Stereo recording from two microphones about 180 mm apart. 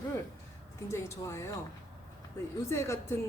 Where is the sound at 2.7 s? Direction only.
15° left (ahead or behind).